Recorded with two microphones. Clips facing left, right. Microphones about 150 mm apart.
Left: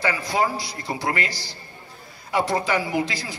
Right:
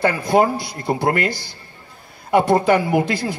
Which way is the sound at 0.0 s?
55° right (ahead or behind).